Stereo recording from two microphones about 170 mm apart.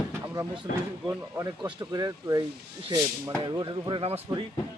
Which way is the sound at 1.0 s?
20° right (ahead or behind).